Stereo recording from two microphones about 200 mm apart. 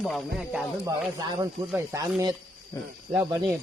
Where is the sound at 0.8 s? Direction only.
20° right (ahead or behind).